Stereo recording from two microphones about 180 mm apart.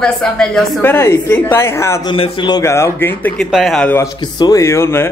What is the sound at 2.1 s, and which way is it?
Speech, 25° left (ahead or behind).